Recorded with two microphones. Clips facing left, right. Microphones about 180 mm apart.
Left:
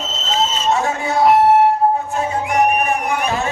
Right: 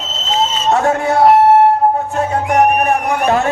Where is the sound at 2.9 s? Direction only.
60° right (ahead or behind).